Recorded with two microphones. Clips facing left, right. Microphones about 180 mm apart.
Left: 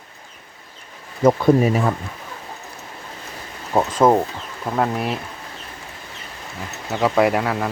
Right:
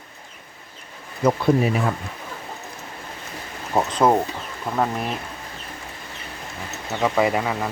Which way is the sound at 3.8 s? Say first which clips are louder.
Left 3 dB; 5° left (ahead or behind).